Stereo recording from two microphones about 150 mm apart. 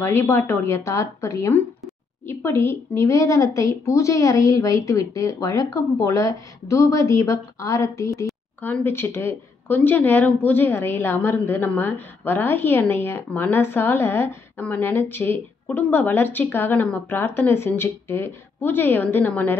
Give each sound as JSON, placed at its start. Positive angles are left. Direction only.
{"t": 0.0, "sound": "a woman's voice", "side_deg": 15}